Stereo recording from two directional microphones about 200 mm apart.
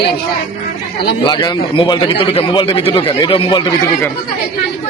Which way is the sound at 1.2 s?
25° left (ahead or behind).